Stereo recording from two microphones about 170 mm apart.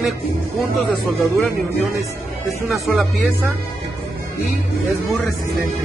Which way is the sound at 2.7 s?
Centre (ahead or behind).